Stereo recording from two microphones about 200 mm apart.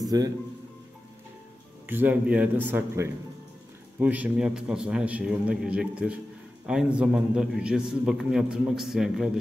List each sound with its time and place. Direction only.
0.0 s speech: 20° right (ahead or behind)
1.9 s a man's voice: 10° right (ahead or behind)